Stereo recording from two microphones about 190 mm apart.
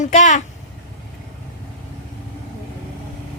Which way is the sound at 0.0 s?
40° left (ahead or behind).